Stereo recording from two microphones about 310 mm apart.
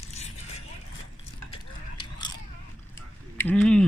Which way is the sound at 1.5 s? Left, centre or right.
Centre.